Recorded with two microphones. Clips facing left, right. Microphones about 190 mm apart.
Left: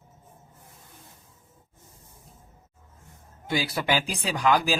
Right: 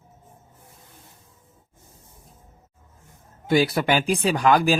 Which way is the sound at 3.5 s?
55° right (ahead or behind).